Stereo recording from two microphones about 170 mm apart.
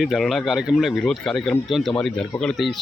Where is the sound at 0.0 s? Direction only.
Centre (ahead or behind).